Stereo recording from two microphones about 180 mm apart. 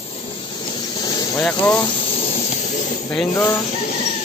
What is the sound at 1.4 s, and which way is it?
Speech, 5° left (ahead or behind).